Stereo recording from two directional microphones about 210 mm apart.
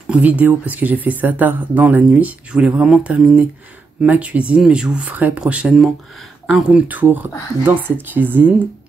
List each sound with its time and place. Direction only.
0.1 s speech: 10° right (ahead or behind)